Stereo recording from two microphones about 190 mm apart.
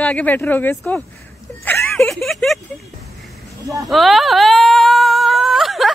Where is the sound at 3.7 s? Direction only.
Centre (ahead or behind).